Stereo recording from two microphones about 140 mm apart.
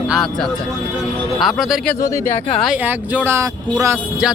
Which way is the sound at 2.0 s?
20° left (ahead or behind).